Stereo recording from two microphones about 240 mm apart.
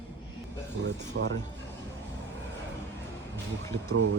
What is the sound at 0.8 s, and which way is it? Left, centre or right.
Speech, right.